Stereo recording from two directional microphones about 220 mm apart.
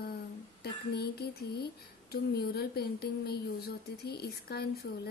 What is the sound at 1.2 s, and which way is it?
A woman's voice, 45° left (ahead or behind).